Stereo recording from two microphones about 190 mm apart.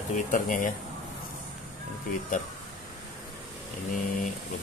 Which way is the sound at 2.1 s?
45° left (ahead or behind).